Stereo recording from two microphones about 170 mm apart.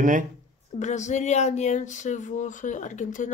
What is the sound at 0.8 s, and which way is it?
Speech, 45° left (ahead or behind).